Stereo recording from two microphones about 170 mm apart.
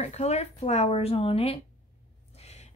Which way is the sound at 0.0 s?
40° left (ahead or behind).